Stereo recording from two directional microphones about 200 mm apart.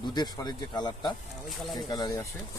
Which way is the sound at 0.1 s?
20° left (ahead or behind).